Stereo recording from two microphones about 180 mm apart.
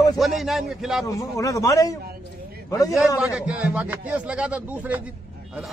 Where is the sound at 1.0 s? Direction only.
20° left (ahead or behind).